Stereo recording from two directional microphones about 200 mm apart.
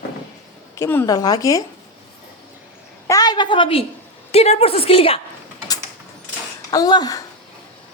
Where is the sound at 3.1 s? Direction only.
20° left (ahead or behind).